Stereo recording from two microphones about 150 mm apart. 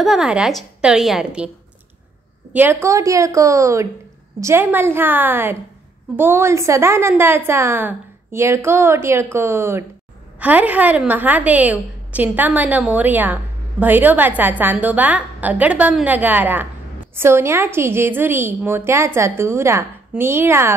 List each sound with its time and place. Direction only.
0.0 s a woman's voice: 5° right (ahead or behind)
2.5 s a woman's voice: 15° right (ahead or behind)